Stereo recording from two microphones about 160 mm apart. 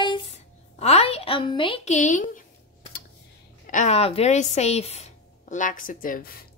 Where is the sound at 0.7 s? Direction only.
40° left (ahead or behind).